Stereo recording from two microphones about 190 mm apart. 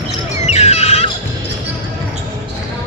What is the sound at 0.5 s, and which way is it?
Music, 35° left (ahead or behind).